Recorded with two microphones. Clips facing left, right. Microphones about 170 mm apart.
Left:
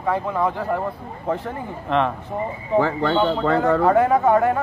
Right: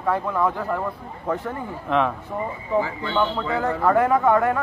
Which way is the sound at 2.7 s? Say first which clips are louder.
Left 4 dB; 70° left (ahead or behind).